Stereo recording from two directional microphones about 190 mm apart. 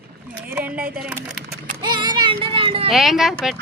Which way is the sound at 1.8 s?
20° right (ahead or behind).